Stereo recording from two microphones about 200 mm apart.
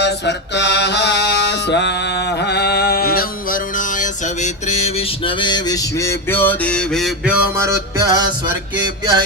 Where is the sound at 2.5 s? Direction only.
55° left (ahead or behind).